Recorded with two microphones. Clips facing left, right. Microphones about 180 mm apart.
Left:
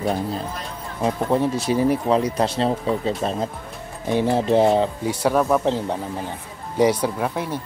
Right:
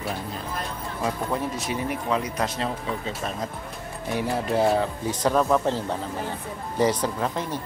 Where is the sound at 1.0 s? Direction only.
30° left (ahead or behind).